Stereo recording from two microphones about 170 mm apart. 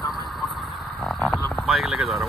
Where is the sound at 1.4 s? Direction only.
Centre (ahead or behind).